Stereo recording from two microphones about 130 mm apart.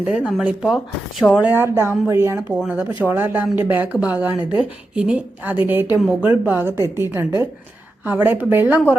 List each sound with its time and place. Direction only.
0.0 s speech: 5° right (ahead or behind)
1.4 s speech: 15° right (ahead or behind)
2.6 s a woman's voice: 5° right (ahead or behind)
4.3 s speech: 35° left (ahead or behind)
4.9 s a woman's voice: 10° right (ahead or behind)